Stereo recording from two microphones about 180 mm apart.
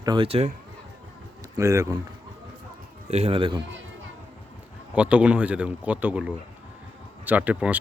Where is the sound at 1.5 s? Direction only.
15° right (ahead or behind).